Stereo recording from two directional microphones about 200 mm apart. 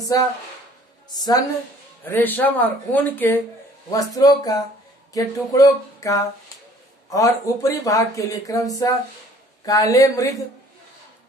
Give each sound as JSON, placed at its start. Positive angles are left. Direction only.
{"t": 1.1, "sound": "a woman's voice", "side_deg": 20}